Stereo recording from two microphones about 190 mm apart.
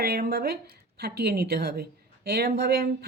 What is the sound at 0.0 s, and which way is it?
Speech, 55° right (ahead or behind).